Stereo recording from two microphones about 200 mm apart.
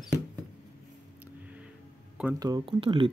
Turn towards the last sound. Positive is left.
turn(degrees=-25)  # may be behind; listen again after turning